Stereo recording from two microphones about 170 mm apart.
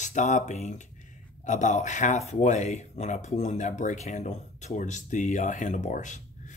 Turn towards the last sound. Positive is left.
turn(degrees=45)  # may be behind; listen again after turning